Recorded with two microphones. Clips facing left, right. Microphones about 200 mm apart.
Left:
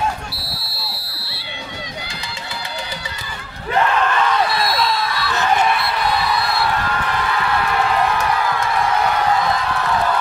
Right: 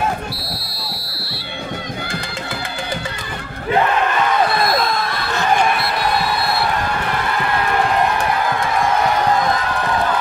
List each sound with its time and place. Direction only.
1.0 s music: 10° right (ahead or behind)
4.5 s basketball bounce: 50° right (ahead or behind)